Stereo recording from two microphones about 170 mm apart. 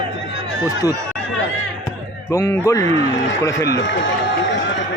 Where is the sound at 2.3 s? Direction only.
20° left (ahead or behind).